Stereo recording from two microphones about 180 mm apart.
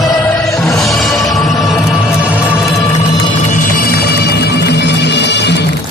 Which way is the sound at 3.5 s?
50° left (ahead or behind).